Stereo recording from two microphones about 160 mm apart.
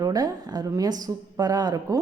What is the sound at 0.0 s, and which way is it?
A woman's voice, 25° right (ahead or behind).